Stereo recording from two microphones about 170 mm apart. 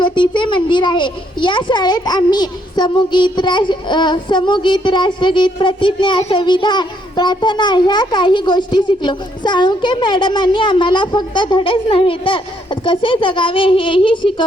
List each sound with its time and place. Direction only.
0.0 s a child's voice: 30° left (ahead or behind)